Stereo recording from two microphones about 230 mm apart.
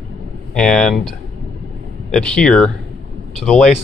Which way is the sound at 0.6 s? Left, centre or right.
Centre.